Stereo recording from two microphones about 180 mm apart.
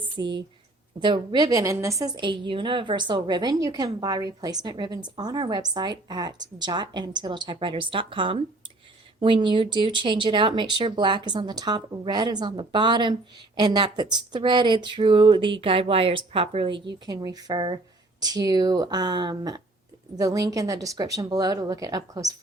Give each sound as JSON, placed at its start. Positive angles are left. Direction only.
{"t": 0.2, "sound": "speech", "side_deg": -80}
{"t": 0.9, "sound": "a woman's voice", "side_deg": -25}